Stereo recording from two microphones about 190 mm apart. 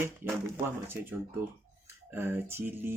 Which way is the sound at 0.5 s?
10° right (ahead or behind).